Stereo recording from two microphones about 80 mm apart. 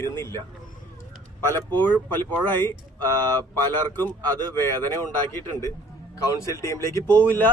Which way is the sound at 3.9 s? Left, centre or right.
Left.